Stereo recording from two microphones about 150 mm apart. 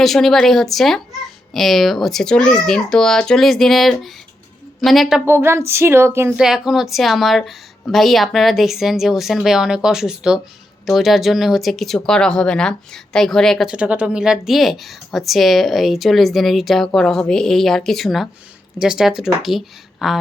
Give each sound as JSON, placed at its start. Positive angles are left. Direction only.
{"t": 0.0, "sound": "speech", "side_deg": 0}
{"t": 5.2, "sound": "speech", "side_deg": -15}
{"t": 6.4, "sound": "speech", "side_deg": -5}